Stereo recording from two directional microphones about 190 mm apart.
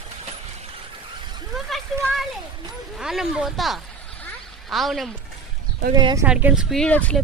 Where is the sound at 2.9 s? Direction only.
Centre (ahead or behind).